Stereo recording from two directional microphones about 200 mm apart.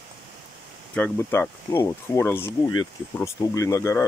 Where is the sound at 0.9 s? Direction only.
10° left (ahead or behind).